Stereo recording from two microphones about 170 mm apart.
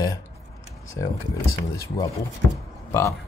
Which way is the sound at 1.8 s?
20° left (ahead or behind).